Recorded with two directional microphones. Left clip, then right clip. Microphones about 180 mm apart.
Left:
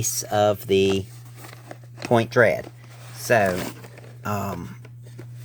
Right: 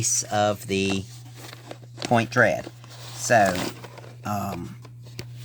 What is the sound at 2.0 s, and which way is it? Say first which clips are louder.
Speech: left 2 dB; 30° left (ahead or behind).